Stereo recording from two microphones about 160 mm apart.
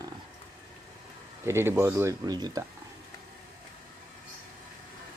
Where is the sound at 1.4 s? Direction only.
15° right (ahead or behind).